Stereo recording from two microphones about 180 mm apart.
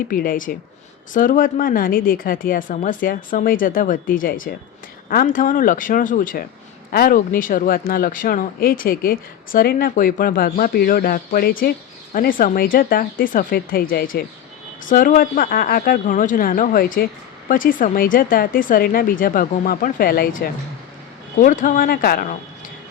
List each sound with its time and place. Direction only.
0.1 s speech: 50° left (ahead or behind)
21.4 s speech: 45° left (ahead or behind)